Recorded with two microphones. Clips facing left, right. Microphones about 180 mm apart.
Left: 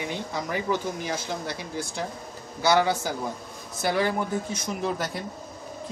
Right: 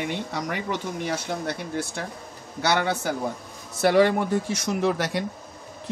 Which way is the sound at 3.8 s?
75° right (ahead or behind).